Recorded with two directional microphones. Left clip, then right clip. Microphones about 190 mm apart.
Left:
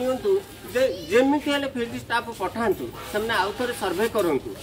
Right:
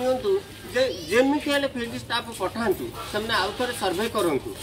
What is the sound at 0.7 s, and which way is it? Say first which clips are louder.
Speech: left 1 dB; 10° left (ahead or behind).